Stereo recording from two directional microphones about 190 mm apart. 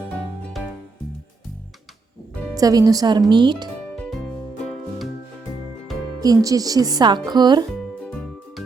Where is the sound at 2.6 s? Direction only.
20° right (ahead or behind).